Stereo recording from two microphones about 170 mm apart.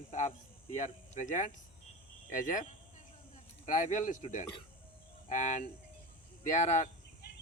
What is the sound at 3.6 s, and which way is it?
Speech, 45° left (ahead or behind).